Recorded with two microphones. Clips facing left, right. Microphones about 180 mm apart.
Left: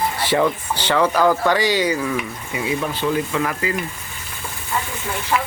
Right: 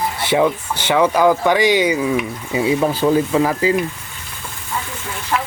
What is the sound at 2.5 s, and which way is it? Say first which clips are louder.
Speech: right 7 dB; 30° right (ahead or behind).